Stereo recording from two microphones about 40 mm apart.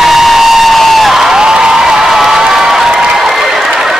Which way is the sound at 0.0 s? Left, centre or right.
Centre.